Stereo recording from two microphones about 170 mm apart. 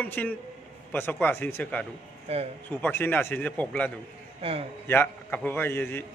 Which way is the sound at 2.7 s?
10° left (ahead or behind).